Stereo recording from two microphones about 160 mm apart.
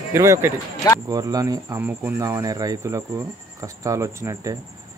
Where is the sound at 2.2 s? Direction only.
20° right (ahead or behind).